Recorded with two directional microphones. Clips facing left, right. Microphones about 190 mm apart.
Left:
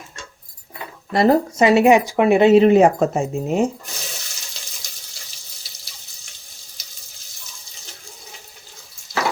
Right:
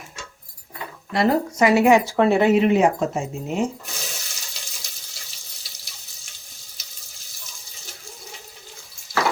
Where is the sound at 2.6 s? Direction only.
40° left (ahead or behind).